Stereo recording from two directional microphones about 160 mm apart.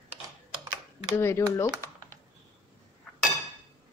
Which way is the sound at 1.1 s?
15° left (ahead or behind).